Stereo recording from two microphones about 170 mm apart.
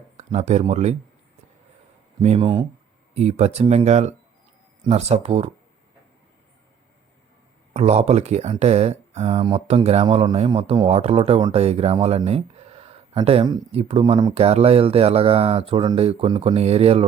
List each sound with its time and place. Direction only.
0.2 s speech: 40° right (ahead or behind)
2.4 s speech: 30° right (ahead or behind)
3.2 s speech: 40° right (ahead or behind)
7.7 s speech: 40° right (ahead or behind)